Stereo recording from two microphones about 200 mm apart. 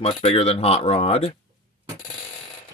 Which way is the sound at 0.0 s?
30° left (ahead or behind).